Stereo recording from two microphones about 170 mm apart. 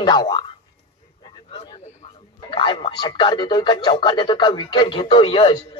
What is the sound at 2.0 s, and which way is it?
Speech, 30° left (ahead or behind).